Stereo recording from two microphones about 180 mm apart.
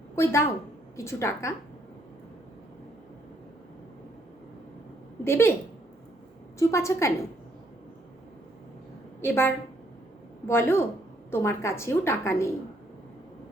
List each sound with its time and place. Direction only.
0.2 s a woman's voice: 15° left (ahead or behind)
5.2 s a woman's voice: 15° left (ahead or behind)
6.6 s a woman's voice: 15° left (ahead or behind)
9.2 s a woman's voice: 10° left (ahead or behind)